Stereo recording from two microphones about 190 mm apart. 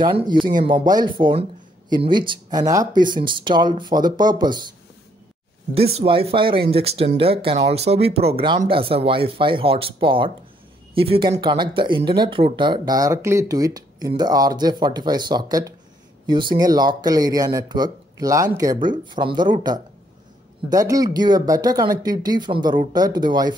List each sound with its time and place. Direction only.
0.0 s speech: 25° right (ahead or behind)
5.8 s speech: 30° right (ahead or behind)